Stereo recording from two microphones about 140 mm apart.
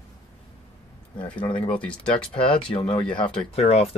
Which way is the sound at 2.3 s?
40° left (ahead or behind).